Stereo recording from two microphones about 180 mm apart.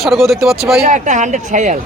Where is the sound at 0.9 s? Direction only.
45° right (ahead or behind).